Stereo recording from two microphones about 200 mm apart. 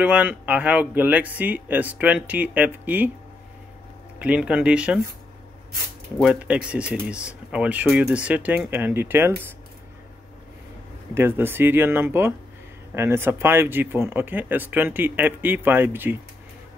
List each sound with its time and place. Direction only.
0.0 s speech: 10° right (ahead or behind)
4.2 s speech: 5° right (ahead or behind)
6.2 s speech: 5° right (ahead or behind)
11.1 s speech: 10° right (ahead or behind)